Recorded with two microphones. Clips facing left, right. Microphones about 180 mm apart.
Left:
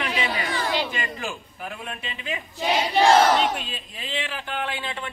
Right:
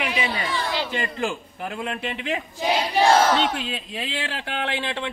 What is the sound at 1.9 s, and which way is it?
Speech, 80° right.